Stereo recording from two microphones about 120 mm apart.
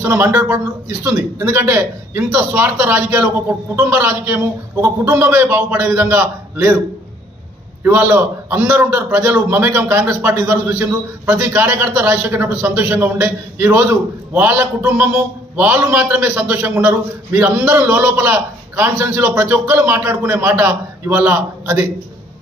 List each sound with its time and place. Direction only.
0.0 s a man's voice: 20° right (ahead or behind)
7.8 s a man's voice: 20° right (ahead or behind)